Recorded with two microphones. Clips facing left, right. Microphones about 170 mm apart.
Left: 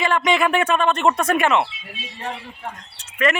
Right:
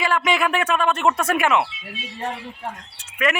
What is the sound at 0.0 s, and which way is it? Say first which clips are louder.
Speech: left 2 dB; 5° right (ahead or behind).